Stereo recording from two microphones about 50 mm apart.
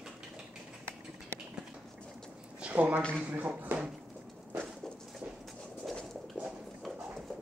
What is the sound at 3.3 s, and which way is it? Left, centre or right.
Speech, right.